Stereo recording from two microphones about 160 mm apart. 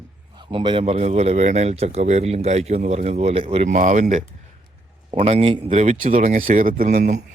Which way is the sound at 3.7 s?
50° right (ahead or behind).